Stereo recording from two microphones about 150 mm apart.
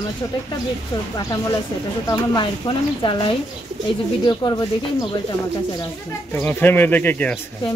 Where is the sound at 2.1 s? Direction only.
30° left (ahead or behind).